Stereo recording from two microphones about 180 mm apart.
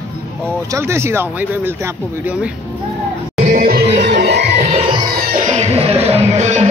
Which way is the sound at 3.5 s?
55° right (ahead or behind).